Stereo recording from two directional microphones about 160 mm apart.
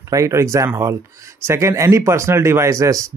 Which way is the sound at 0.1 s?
20° right (ahead or behind).